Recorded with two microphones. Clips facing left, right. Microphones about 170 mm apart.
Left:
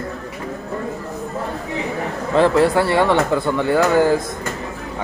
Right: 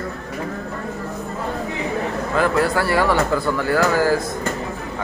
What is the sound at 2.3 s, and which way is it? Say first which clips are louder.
Speech: left 5 dB; 30° left (ahead or behind).